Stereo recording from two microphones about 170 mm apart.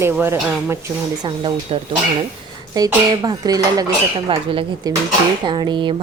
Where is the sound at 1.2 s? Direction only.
30° right (ahead or behind).